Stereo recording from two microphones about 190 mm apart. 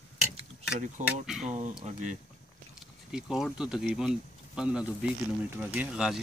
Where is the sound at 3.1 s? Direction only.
5° right (ahead or behind).